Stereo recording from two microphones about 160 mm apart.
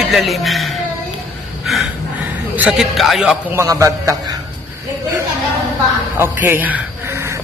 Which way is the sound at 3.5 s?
20° right (ahead or behind).